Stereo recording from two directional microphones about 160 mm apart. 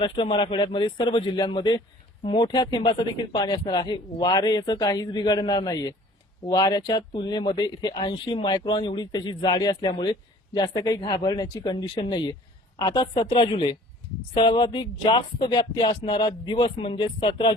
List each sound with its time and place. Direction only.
0.0 s speech: 30° left (ahead or behind)